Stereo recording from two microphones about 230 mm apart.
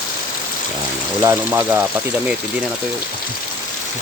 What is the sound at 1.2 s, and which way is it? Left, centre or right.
Speech, centre.